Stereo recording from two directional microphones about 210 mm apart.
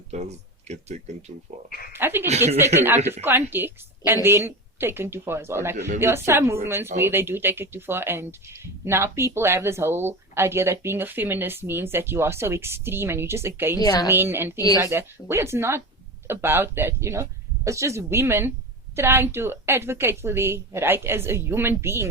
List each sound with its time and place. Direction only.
0.1 s speech: 30° right (ahead or behind)
1.9 s speech: 10° right (ahead or behind)
13.7 s a woman's voice: 20° left (ahead or behind)
14.1 s speech: 10° right (ahead or behind)